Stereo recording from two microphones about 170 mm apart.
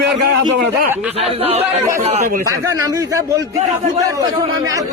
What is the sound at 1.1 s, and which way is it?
A man's voice, 35° right (ahead or behind).